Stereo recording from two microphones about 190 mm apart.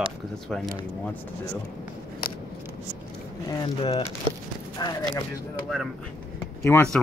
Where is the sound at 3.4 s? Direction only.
20° left (ahead or behind).